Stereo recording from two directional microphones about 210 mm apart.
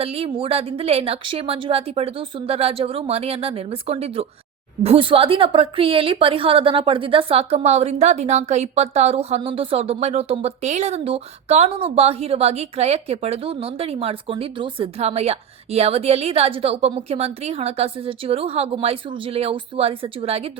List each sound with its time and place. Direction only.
0.0 s a woman's voice: 25° right (ahead or behind)